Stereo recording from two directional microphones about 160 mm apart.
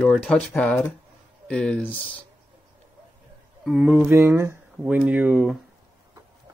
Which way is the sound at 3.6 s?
5° right (ahead or behind).